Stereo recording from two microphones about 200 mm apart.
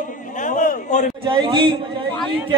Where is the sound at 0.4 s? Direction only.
40° left (ahead or behind).